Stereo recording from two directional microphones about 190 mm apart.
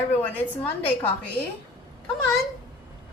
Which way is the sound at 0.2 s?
5° left (ahead or behind).